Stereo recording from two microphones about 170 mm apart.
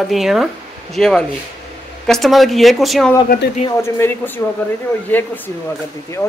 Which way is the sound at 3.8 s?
15° left (ahead or behind).